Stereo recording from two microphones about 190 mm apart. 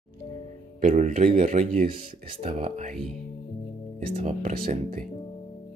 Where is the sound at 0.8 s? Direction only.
40° right (ahead or behind).